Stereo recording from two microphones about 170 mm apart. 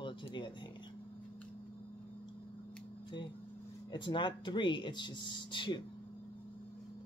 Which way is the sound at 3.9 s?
30° left (ahead or behind).